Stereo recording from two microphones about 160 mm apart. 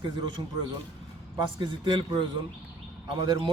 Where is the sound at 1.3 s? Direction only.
30° right (ahead or behind).